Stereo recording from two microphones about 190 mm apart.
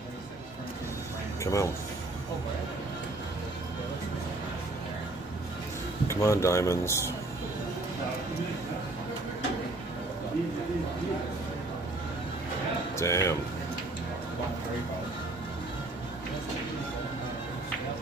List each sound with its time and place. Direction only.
1.4 s speech: 15° left (ahead or behind)
6.0 s speech: 15° left (ahead or behind)
12.9 s speech: 15° left (ahead or behind)